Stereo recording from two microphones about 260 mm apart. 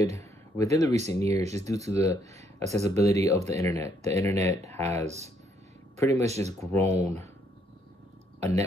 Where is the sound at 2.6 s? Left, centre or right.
Right.